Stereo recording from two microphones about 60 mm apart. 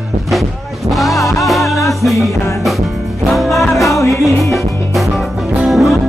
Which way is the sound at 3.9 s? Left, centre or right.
Left.